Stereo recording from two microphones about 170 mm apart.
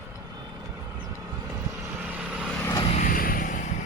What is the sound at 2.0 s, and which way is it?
Vehicle, 5° right (ahead or behind).